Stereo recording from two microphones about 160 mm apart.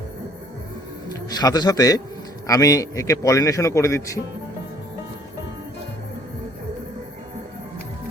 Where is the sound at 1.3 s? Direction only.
25° left (ahead or behind).